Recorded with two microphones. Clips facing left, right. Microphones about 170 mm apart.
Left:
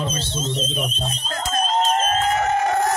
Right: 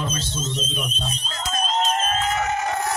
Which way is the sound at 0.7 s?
50° left (ahead or behind).